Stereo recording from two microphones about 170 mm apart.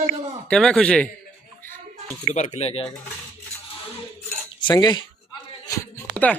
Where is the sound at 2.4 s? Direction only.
40° left (ahead or behind).